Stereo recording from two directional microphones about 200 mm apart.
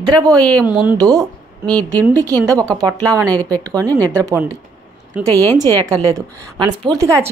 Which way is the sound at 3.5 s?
15° right (ahead or behind).